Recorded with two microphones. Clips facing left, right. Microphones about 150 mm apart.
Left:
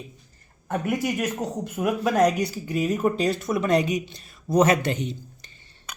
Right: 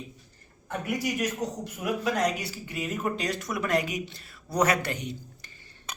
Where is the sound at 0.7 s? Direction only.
50° left (ahead or behind); by 5.1 s 25° left (ahead or behind).